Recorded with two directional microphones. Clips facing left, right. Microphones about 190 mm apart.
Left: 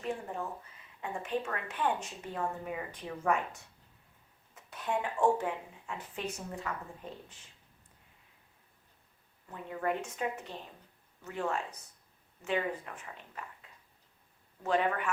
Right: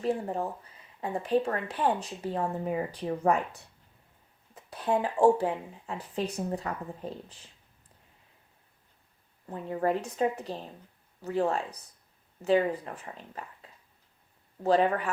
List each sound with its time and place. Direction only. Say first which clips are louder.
0.0 s speech: right 7 dB; 35° right (ahead or behind)
9.5 s speech: right 6 dB; 35° right (ahead or behind)